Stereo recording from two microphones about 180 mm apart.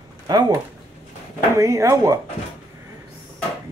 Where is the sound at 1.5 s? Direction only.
15° right (ahead or behind).